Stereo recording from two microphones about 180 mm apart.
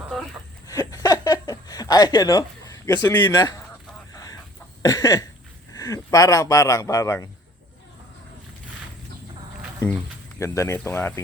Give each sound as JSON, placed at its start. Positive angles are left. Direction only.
{"t": 0.7, "sound": "a sound", "side_deg": 20}
{"t": 5.7, "sound": "speech", "side_deg": 20}
{"t": 9.8, "sound": "speech", "side_deg": 15}